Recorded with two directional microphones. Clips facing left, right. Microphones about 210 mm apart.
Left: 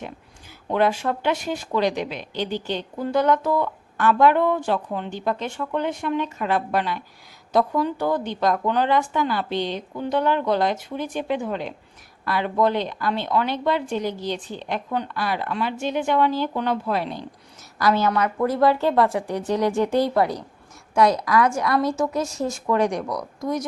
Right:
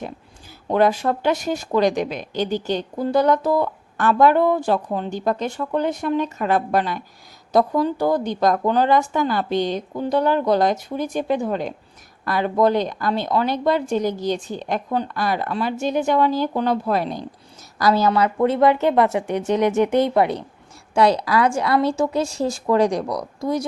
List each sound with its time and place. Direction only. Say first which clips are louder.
0.7 s a woman's voice: right 3 dB; 40° right (ahead or behind)